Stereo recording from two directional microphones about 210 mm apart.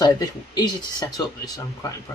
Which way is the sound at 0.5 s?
20° left (ahead or behind).